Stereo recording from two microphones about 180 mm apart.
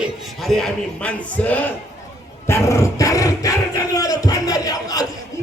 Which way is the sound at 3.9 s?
20° left (ahead or behind).